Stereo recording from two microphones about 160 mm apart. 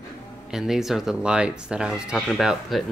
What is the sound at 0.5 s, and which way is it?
Speech, 5° right (ahead or behind).